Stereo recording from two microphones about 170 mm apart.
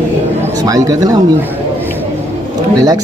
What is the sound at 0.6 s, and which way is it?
Speech, 20° right (ahead or behind).